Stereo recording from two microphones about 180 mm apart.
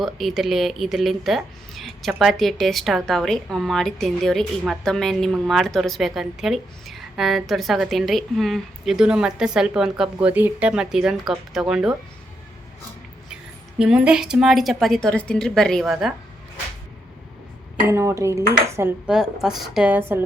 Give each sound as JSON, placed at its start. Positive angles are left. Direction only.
{"t": 0.0, "sound": "speech", "side_deg": 0}
{"t": 13.7, "sound": "speech", "side_deg": -5}
{"t": 17.8, "sound": "speech", "side_deg": -15}